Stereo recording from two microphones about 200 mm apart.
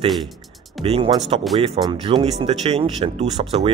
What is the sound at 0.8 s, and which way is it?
Speech, 25° right (ahead or behind).